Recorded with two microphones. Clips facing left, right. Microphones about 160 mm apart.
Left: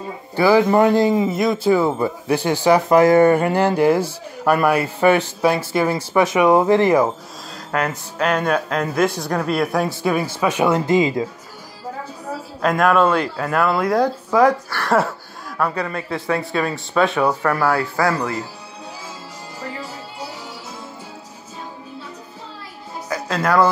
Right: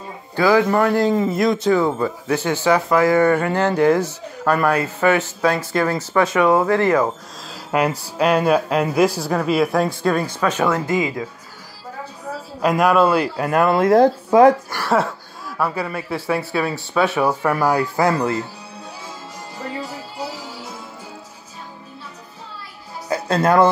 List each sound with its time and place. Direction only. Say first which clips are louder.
0.5 s speech: left 2 dB; 15° left (ahead or behind)
5.5 s speech: left 1 dB; 10° left (ahead or behind)
7.7 s speech: right 3 dB; 15° right (ahead or behind); by 10.8 s 15° left (ahead or behind)
10.9 s speech: left 4 dB; 25° left (ahead or behind)
12.6 s speech: even; 5° right (ahead or behind)
13.5 s speech: right 4 dB; 20° right (ahead or behind)
14.8 s a woman's voice: left 1 dB; centre (ahead or behind); by 18.4 s 25° right (ahead or behind)
23.0 s music: right 3 dB; 30° right (ahead or behind)